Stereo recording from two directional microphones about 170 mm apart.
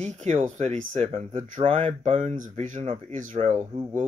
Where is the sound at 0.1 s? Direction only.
45° right (ahead or behind).